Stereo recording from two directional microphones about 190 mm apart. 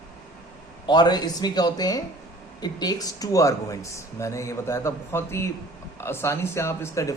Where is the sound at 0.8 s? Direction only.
20° left (ahead or behind).